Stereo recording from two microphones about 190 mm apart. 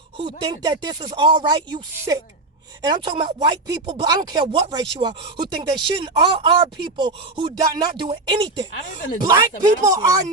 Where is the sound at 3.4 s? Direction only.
25° right (ahead or behind).